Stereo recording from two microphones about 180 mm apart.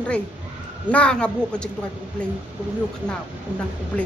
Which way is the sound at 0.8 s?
5° left (ahead or behind).